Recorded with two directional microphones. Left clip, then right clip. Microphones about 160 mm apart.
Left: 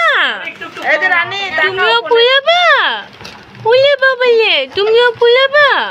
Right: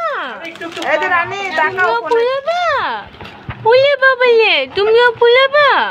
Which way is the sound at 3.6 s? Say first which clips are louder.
Left 1 dB; centre (ahead or behind).